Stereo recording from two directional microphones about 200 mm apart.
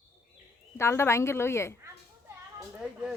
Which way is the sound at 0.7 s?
15° left (ahead or behind).